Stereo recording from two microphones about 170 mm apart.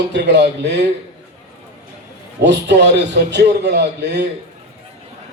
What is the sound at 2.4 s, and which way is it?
Speech, 90° right.